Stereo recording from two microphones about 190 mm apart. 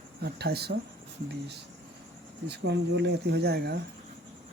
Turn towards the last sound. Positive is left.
turn(degrees=-55)  # may be behind; listen again after turning